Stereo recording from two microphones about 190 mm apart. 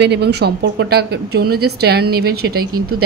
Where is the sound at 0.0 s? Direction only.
60° right (ahead or behind).